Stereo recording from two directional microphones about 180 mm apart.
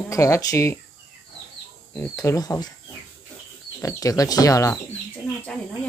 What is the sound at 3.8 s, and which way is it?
Speech, 15° left (ahead or behind).